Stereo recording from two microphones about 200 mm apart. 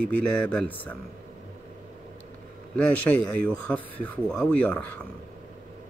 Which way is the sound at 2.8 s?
5° left (ahead or behind).